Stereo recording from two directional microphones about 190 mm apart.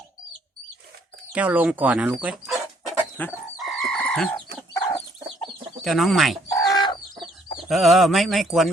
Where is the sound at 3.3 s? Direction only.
Centre (ahead or behind).